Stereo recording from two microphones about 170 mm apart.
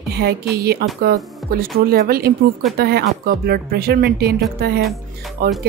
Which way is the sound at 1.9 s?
65° right (ahead or behind).